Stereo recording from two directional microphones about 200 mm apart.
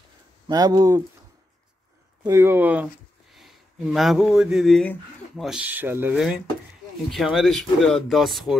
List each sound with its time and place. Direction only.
0.5 s speech: 20° right (ahead or behind)
2.2 s speech: 15° right (ahead or behind)